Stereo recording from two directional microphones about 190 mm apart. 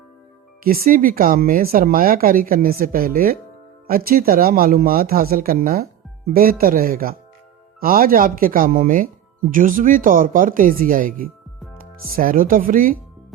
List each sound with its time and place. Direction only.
0.6 s speech: 50° right (ahead or behind)